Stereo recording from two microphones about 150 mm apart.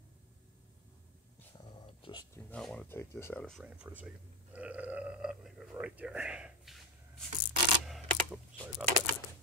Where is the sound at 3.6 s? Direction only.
10° right (ahead or behind).